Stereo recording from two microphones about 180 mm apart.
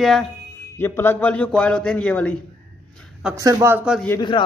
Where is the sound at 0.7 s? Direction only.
10° left (ahead or behind).